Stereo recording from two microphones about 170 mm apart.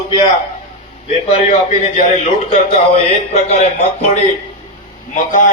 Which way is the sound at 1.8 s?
45° left (ahead or behind).